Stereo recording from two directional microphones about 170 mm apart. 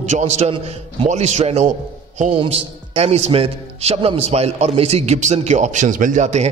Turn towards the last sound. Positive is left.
turn(degrees=-45)  # may be behind; listen again after turning